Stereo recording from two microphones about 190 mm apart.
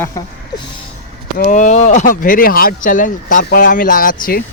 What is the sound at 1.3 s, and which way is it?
Speech, 45° left (ahead or behind).